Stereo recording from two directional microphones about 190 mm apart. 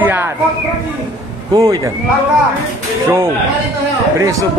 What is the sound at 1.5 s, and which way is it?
Speech, 20° right (ahead or behind).